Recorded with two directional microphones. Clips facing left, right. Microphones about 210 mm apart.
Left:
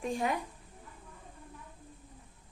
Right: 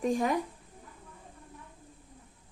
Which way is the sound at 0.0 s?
40° right (ahead or behind).